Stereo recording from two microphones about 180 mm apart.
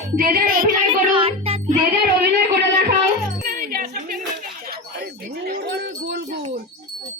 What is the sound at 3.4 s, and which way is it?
Bicycle bell, 55° right (ahead or behind).